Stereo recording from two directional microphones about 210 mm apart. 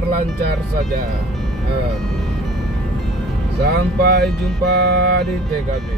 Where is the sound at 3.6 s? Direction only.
50° right (ahead or behind).